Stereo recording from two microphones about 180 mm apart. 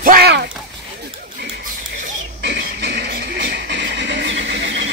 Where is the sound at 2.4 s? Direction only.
70° right (ahead or behind).